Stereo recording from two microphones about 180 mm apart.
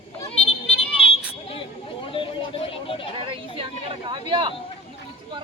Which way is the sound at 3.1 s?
30° right (ahead or behind).